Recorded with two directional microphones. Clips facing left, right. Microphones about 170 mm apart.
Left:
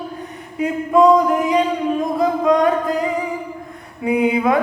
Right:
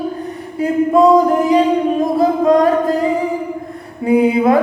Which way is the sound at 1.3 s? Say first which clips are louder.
Right 4 dB; 35° right (ahead or behind).